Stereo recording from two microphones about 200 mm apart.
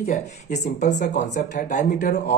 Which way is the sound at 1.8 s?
50° left (ahead or behind).